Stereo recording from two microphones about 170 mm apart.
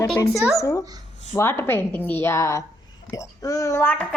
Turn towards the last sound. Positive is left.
turn(degrees=10)  # may be behind; listen again after turning